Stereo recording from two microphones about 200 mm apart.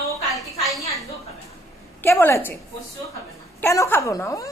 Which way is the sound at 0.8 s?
15° left (ahead or behind).